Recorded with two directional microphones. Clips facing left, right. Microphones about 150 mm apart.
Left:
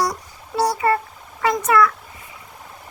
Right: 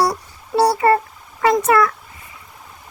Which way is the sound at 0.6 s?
65° right (ahead or behind).